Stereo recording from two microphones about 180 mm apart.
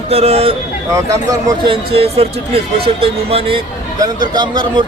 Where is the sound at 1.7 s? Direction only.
30° right (ahead or behind).